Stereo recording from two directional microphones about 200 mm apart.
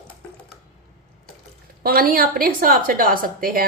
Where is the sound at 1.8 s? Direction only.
45° right (ahead or behind).